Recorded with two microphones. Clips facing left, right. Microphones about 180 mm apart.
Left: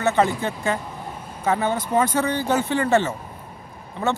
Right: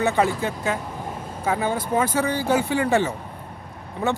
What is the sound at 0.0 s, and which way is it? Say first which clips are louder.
Speech: left 1 dB; 10° right (ahead or behind).